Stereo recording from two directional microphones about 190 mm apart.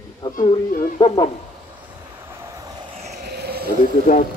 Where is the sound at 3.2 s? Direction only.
55° right (ahead or behind).